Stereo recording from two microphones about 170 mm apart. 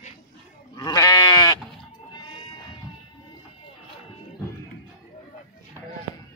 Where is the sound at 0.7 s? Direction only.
25° left (ahead or behind).